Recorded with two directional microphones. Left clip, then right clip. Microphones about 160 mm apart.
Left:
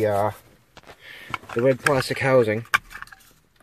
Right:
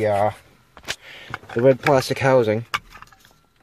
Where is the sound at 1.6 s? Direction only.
30° right (ahead or behind).